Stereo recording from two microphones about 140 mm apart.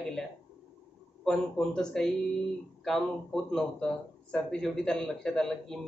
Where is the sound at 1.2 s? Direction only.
5° left (ahead or behind).